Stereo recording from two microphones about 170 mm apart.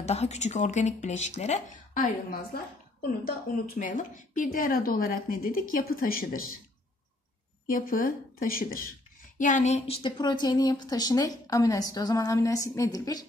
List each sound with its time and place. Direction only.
0.0 s speech: 40° left (ahead or behind)
2.3 s a woman's voice: 60° left (ahead or behind)
7.6 s a woman's voice: 55° left (ahead or behind)
9.4 s a woman's voice: 45° left (ahead or behind)
9.8 s speech: 30° left (ahead or behind)